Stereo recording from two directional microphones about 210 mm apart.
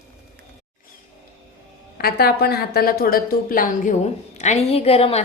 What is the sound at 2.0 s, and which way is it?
A woman's voice, 50° left (ahead or behind).